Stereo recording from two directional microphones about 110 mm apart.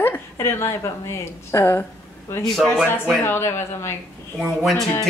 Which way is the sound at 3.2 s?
25° left (ahead or behind).